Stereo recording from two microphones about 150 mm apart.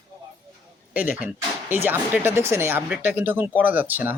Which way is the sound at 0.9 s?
10° right (ahead or behind).